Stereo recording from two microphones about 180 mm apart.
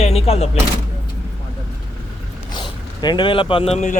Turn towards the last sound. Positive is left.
turn(degrees=40)  # may be behind; listen again after turning